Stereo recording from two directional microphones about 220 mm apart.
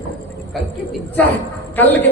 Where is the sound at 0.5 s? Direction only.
5° left (ahead or behind).